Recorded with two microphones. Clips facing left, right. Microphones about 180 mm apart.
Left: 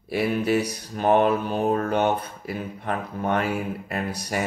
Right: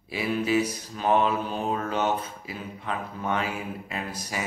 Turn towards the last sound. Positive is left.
turn(degrees=65)  # may be behind; listen again after turning